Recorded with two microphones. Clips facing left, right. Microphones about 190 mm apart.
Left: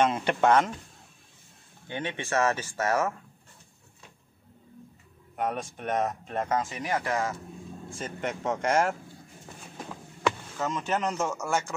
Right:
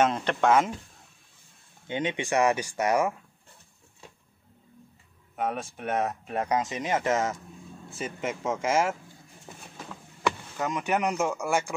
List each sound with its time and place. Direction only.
0.1 s speech: 5° left (ahead or behind)
0.5 s speech: 5° right (ahead or behind)
1.9 s speech: 20° right (ahead or behind)
5.3 s speech: 5° right (ahead or behind); by 7.4 s 20° right (ahead or behind)
8.0 s speech: 5° right (ahead or behind)
10.6 s speech: 15° right (ahead or behind)